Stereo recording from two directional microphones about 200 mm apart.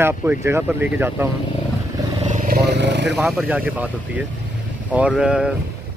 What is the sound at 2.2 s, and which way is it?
Vehicle, 40° right (ahead or behind).